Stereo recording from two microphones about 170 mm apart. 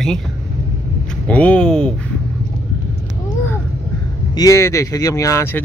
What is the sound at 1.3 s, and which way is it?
Speech, 5° left (ahead or behind).